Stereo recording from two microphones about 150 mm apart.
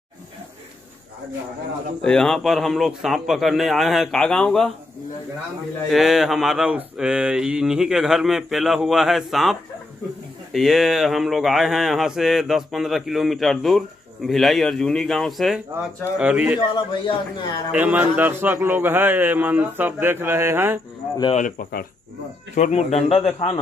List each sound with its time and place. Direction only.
2.0 s speech: 5° left (ahead or behind)
5.9 s a man's voice: centre (ahead or behind)
16.5 s a man's voice: 30° left (ahead or behind)
17.6 s a man's voice: 10° right (ahead or behind)
21.4 s speech: 65° left (ahead or behind)
22.6 s a man's voice: 45° left (ahead or behind)